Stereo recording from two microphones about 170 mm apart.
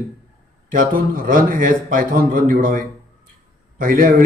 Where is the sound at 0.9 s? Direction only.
55° right (ahead or behind).